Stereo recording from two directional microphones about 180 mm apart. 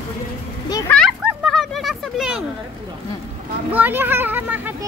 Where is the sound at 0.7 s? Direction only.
20° left (ahead or behind).